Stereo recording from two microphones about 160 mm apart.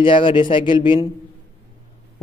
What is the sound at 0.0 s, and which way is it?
A man's voice, 30° left (ahead or behind).